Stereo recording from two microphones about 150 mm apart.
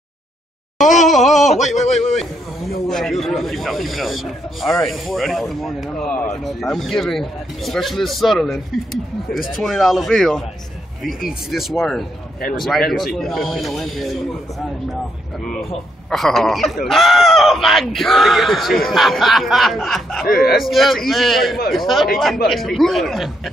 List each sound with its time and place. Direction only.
0.9 s speech: centre (ahead or behind)
1.6 s a man's voice: 50° left (ahead or behind)
2.9 s speech: centre (ahead or behind)
9.6 s speech: centre (ahead or behind)
11.1 s speech: 75° left (ahead or behind)
11.5 s speech: centre (ahead or behind)
16.1 s speech: centre (ahead or behind)
20.2 s speech: 75° left (ahead or behind)
20.6 s speech: centre (ahead or behind)